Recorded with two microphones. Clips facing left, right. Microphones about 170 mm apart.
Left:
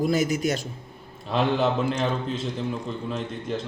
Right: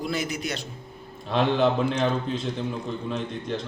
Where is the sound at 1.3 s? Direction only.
5° left (ahead or behind).